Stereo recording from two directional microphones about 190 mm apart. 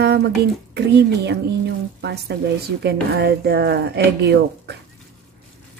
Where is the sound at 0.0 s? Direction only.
60° right (ahead or behind).